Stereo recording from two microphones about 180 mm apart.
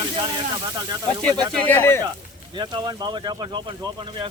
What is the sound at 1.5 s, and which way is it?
Speech, 10° left (ahead or behind).